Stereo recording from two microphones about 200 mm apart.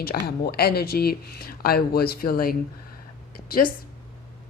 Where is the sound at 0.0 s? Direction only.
50° left (ahead or behind).